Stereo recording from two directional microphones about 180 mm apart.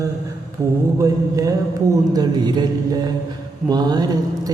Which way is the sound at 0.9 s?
20° right (ahead or behind).